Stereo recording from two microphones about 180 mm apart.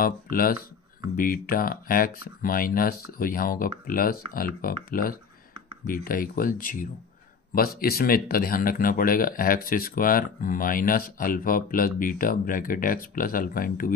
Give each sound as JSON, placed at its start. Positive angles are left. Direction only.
{"t": 0.0, "sound": "speech", "side_deg": 55}